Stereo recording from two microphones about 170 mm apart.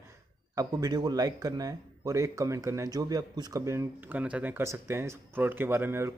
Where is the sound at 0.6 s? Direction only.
25° right (ahead or behind).